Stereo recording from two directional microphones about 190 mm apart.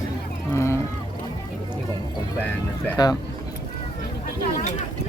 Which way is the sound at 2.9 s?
20° left (ahead or behind).